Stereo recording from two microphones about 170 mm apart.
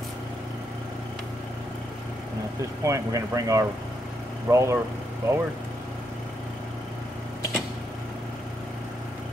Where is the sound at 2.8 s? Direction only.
20° right (ahead or behind).